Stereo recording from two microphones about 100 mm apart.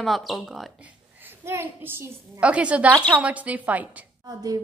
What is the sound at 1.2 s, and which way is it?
Speech, 25° right (ahead or behind).